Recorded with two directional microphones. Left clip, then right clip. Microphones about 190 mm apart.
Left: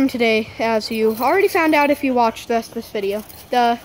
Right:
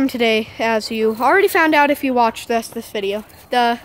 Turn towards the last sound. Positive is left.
turn(degrees=-5)  # may be behind; listen again after turning